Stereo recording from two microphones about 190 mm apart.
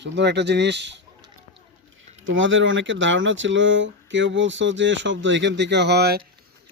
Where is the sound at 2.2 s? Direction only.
90° right.